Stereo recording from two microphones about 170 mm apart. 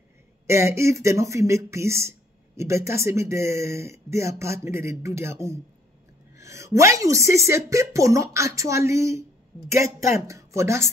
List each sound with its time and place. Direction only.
0.5 s speech: 15° right (ahead or behind)